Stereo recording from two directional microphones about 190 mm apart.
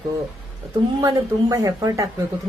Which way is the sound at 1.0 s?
20° right (ahead or behind).